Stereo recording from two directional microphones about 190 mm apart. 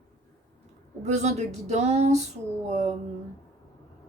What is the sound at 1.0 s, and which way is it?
Speech, 35° right (ahead or behind).